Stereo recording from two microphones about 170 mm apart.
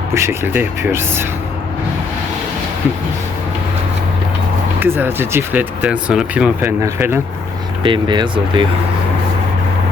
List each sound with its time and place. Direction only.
0.1 s speech: 15° right (ahead or behind)
4.8 s speech: 10° right (ahead or behind)
7.9 s speech: 25° right (ahead or behind)